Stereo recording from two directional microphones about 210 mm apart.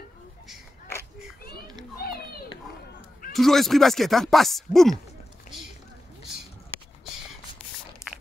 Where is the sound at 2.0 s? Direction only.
45° left (ahead or behind).